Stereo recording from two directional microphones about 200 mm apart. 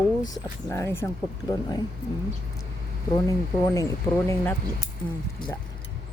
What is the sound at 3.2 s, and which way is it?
Speech, 15° left (ahead or behind).